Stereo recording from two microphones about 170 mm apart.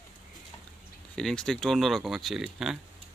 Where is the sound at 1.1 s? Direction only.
5° left (ahead or behind).